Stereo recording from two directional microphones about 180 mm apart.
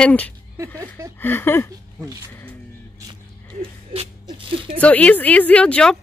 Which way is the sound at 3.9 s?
30° right (ahead or behind).